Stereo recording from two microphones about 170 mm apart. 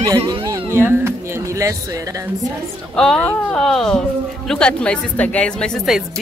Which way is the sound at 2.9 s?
5° left (ahead or behind).